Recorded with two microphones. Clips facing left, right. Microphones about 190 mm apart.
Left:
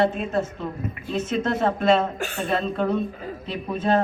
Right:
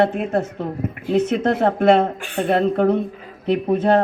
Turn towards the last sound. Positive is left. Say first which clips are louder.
# right 7 dB
turn(degrees=-60)  # may be behind; listen again after turning